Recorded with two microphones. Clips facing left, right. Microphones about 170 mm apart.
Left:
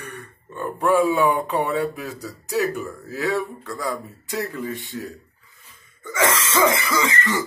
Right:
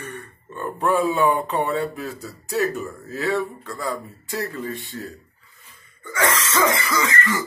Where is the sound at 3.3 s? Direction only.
15° left (ahead or behind).